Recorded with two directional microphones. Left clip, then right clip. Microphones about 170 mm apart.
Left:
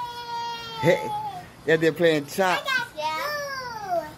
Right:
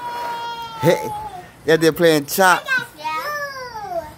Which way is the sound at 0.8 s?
45° right (ahead or behind).